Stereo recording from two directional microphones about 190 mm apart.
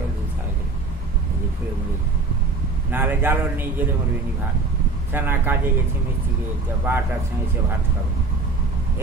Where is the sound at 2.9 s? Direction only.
10° right (ahead or behind).